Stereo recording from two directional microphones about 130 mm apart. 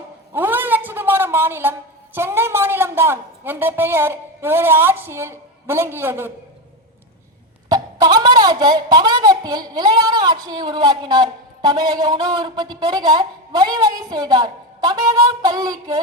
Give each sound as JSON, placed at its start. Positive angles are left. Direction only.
{"t": 0.3, "sound": "a sound", "side_deg": -15}
{"t": 2.1, "sound": "a woman's voice", "side_deg": -20}
{"t": 7.7, "sound": "a woman's voice", "side_deg": -30}